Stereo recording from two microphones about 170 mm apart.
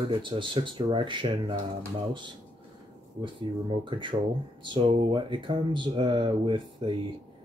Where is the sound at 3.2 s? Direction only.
30° right (ahead or behind).